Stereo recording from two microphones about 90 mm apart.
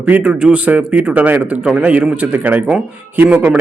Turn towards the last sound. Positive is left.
turn(degrees=-10)  # may be behind; listen again after turning